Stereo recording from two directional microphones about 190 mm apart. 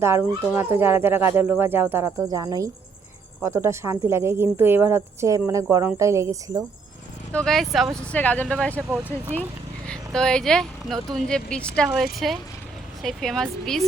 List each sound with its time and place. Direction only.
0.0 s speech: 15° right (ahead or behind)
7.3 s speech: centre (ahead or behind)